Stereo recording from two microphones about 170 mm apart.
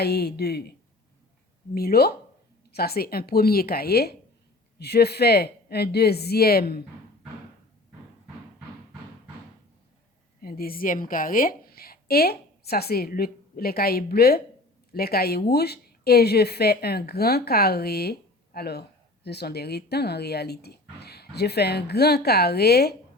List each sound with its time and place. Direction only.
0.0 s speech: 70° left (ahead or behind)
1.7 s speech: 65° left (ahead or behind)
10.4 s a woman's voice: 60° left (ahead or behind)